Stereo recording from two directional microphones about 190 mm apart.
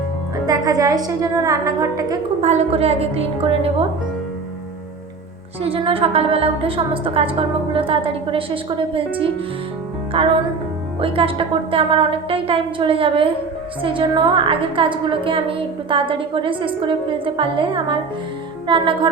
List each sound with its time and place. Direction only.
0.4 s a woman's voice: 20° right (ahead or behind)
2.4 s a woman's voice: 35° right (ahead or behind)
5.6 s a woman's voice: 30° right (ahead or behind)